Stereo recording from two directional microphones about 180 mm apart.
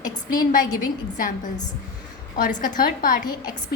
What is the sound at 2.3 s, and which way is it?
Speech, 45° left (ahead or behind).